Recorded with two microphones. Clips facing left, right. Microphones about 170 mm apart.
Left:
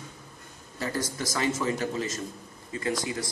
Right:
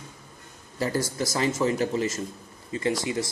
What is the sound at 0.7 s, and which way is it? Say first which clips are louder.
Speech: right 5 dB; 30° right (ahead or behind).